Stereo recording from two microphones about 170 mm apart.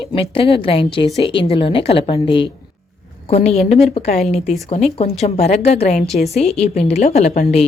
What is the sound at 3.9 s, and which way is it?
Speech, 40° left (ahead or behind).